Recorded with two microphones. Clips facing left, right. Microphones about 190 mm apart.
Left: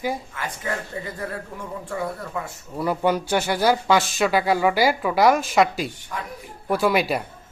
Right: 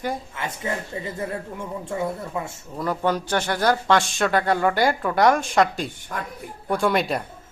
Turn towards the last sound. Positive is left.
turn(degrees=5)  # may be behind; listen again after turning